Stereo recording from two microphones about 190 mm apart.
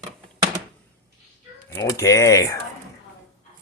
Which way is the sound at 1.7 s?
15° left (ahead or behind).